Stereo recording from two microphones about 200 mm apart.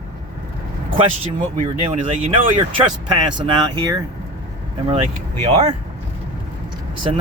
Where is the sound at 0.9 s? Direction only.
30° right (ahead or behind).